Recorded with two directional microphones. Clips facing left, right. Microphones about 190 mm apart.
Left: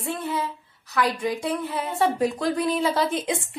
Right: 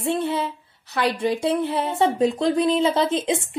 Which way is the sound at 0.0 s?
30° right (ahead or behind).